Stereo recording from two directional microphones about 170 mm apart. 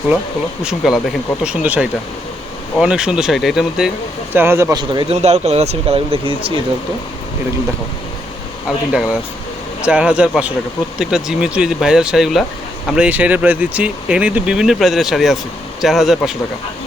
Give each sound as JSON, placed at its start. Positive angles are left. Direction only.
{"t": 0.6, "sound": "speech", "side_deg": -5}
{"t": 4.4, "sound": "speech", "side_deg": -15}
{"t": 8.9, "sound": "speech", "side_deg": -5}